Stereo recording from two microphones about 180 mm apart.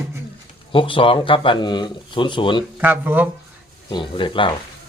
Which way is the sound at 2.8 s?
10° right (ahead or behind).